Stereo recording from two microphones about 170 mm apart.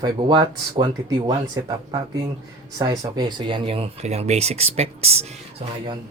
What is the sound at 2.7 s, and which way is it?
Speech, 20° right (ahead or behind).